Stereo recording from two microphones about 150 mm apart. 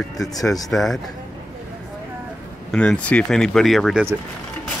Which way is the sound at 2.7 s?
5° left (ahead or behind).